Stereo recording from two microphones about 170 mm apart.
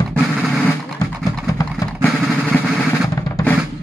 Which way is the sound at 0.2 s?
5° left (ahead or behind).